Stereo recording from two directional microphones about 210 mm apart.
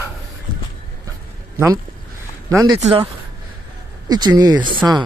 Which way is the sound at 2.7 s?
30° right (ahead or behind).